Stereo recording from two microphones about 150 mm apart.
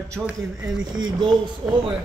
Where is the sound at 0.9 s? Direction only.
30° right (ahead or behind).